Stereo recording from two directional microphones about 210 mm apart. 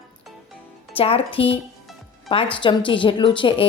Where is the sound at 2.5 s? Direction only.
25° left (ahead or behind).